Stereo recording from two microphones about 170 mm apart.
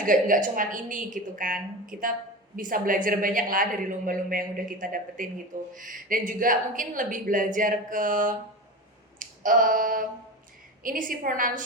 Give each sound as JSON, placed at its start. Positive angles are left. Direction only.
{"t": 0.0, "sound": "a woman's voice", "side_deg": -50}
{"t": 9.1, "sound": "finger snapping", "side_deg": -50}
{"t": 10.8, "sound": "a woman's voice", "side_deg": -55}